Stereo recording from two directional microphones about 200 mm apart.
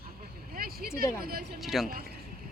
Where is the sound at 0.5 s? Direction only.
50° right (ahead or behind).